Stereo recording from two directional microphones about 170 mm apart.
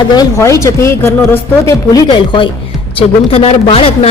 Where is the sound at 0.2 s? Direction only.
20° left (ahead or behind).